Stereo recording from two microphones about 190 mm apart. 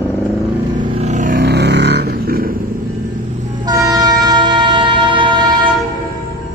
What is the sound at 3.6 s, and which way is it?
Train, 20° right (ahead or behind).